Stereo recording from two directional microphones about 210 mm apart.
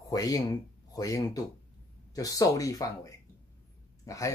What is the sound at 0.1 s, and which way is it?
Speech, 15° left (ahead or behind).